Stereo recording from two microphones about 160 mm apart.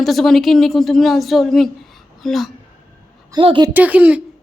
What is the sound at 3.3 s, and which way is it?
Speech, 30° right (ahead or behind).